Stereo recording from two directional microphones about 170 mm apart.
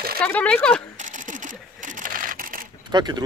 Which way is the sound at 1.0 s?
50° right (ahead or behind).